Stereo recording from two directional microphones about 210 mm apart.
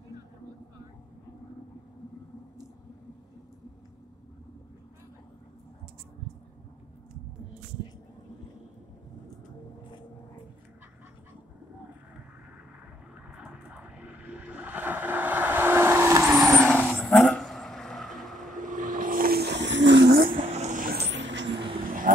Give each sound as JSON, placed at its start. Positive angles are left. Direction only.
{"t": 13.4, "sound": "vehicle", "side_deg": -5}
{"t": 16.3, "sound": "vehicle", "side_deg": 0}
{"t": 18.6, "sound": "vehicle", "side_deg": -40}
{"t": 20.2, "sound": "vehicle", "side_deg": -30}
{"t": 22.1, "sound": "a sound", "side_deg": -40}